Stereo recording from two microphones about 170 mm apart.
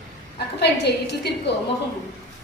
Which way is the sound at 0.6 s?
80° left.